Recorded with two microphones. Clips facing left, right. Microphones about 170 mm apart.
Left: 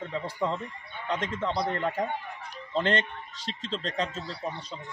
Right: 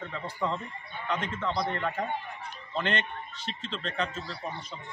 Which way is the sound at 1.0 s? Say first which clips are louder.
Left 2 dB; 35° left (ahead or behind).